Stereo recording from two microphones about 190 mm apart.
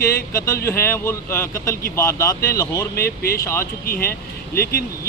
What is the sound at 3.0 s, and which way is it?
Speech, 55° left (ahead or behind).